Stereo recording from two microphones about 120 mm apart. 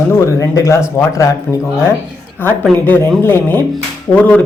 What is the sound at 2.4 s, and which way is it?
Speech, 15° left (ahead or behind).